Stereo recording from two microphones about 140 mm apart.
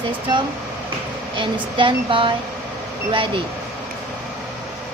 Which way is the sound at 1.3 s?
35° right (ahead or behind).